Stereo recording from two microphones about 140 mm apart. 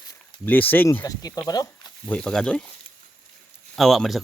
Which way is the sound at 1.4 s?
30° left (ahead or behind).